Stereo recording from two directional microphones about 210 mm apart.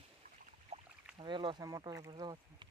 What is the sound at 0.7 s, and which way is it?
Boat, 30° right (ahead or behind).